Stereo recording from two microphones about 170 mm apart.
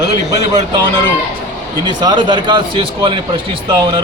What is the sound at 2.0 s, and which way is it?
Speech, 25° right (ahead or behind).